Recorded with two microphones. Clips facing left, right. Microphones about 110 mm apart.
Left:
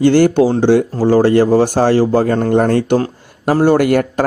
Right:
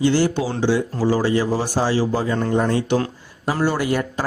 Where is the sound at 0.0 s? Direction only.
55° left (ahead or behind).